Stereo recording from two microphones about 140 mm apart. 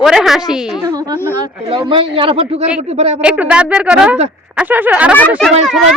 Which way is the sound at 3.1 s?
10° right (ahead or behind).